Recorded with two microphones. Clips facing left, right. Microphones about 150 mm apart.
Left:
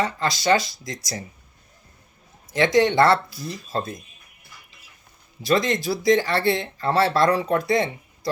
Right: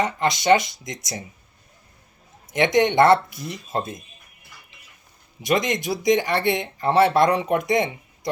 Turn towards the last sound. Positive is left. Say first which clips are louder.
# even
turn(degrees=-20)  # may be behind; listen again after turning